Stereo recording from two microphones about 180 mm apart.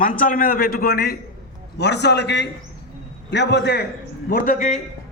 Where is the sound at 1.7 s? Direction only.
70° left (ahead or behind).